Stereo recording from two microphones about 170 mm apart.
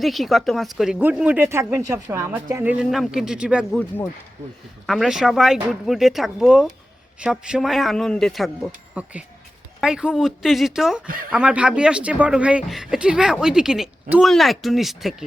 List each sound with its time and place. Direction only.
0.0 s speech: centre (ahead or behind)
3.8 s speech: 10° left (ahead or behind)
4.9 s speech: centre (ahead or behind)
9.8 s speech: 5° right (ahead or behind)